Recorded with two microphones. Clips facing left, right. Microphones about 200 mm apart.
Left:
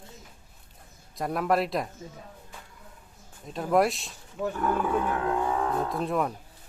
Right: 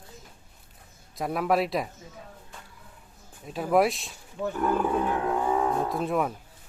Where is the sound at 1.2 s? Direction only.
Centre (ahead or behind).